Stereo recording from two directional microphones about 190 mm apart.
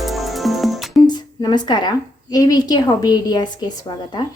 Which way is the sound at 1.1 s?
20° left (ahead or behind).